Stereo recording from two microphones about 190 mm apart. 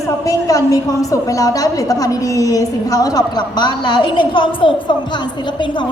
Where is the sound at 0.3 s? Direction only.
20° left (ahead or behind).